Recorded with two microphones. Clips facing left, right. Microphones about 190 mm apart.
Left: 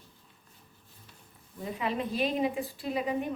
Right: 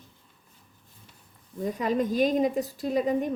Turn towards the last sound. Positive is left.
turn(degrees=-45)  # may be behind; listen again after turning